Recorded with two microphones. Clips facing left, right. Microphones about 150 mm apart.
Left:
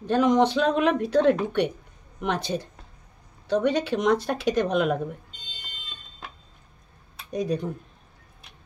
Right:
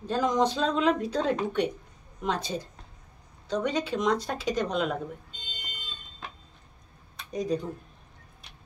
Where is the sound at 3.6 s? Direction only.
65° left (ahead or behind).